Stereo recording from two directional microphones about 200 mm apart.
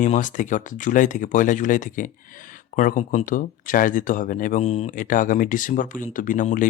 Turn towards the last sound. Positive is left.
turn(degrees=40)  # may be behind; listen again after turning